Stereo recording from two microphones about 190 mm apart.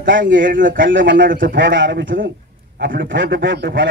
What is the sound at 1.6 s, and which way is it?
A man's voice, 70° right (ahead or behind).